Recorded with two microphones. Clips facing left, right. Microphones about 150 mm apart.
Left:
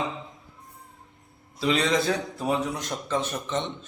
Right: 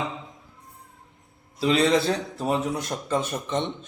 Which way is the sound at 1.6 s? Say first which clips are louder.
Right 3 dB; 35° right (ahead or behind).